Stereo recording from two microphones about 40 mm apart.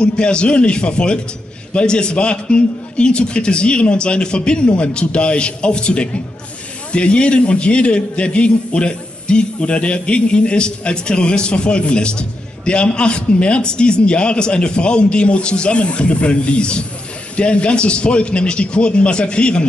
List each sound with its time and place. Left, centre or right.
0.0 s a man's voice: left